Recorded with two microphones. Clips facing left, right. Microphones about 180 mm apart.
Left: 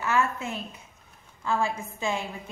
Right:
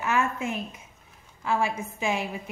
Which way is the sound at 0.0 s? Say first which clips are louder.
Even; 15° right (ahead or behind).